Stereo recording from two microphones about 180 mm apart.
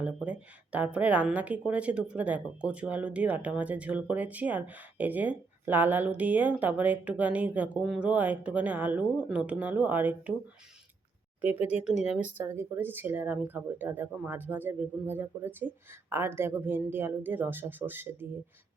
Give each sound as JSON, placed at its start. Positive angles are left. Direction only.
{"t": 0.0, "sound": "a woman's voice", "side_deg": -5}
{"t": 11.4, "sound": "speech", "side_deg": 35}
{"t": 12.5, "sound": "a woman's voice", "side_deg": -10}